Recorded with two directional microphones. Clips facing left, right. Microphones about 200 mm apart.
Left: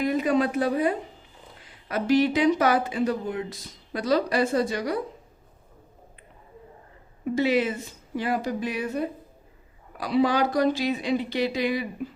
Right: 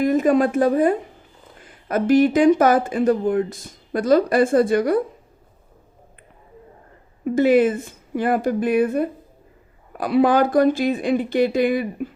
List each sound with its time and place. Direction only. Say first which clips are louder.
0.0 s speech: right 6 dB; 45° right (ahead or behind)
7.3 s speech: right 8 dB; 50° right (ahead or behind)